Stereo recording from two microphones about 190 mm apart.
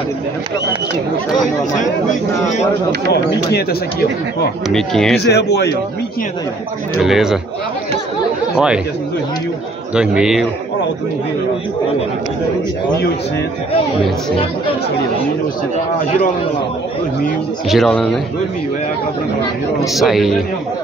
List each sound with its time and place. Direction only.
4.6 s a man's voice: 5° left (ahead or behind)
5.1 s speech: 60° left (ahead or behind)
7.0 s a man's voice: centre (ahead or behind)
8.5 s a man's voice: 5° right (ahead or behind)
9.9 s a man's voice: 5° right (ahead or behind)
17.6 s a man's voice: centre (ahead or behind)
19.9 s a man's voice: centre (ahead or behind)